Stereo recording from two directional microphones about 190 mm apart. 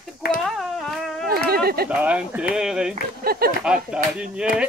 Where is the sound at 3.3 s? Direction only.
55° right (ahead or behind).